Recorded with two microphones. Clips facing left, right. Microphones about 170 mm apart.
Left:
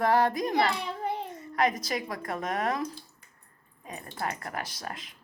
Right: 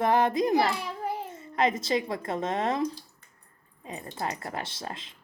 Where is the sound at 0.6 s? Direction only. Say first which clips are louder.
Even; 5° right (ahead or behind).